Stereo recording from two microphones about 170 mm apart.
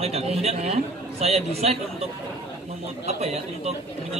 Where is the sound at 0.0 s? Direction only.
40° right (ahead or behind).